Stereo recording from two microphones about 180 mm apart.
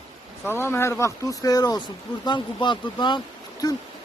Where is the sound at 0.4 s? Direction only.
10° left (ahead or behind).